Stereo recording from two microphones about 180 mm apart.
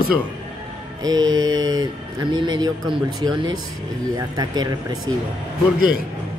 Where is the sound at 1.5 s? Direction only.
90° right.